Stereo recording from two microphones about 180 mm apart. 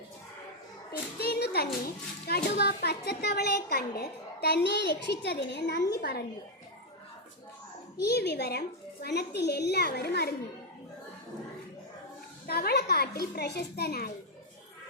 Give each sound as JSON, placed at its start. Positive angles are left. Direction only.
{"t": 1.2, "sound": "a sound", "side_deg": 60}
{"t": 2.2, "sound": "a woman's voice", "side_deg": 60}
{"t": 8.0, "sound": "a woman's voice", "side_deg": 65}
{"t": 12.5, "sound": "a woman's voice", "side_deg": 60}